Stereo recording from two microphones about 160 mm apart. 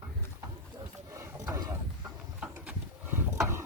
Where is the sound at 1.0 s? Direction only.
20° right (ahead or behind).